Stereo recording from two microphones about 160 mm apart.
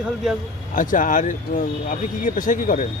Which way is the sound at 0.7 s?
55° left (ahead or behind).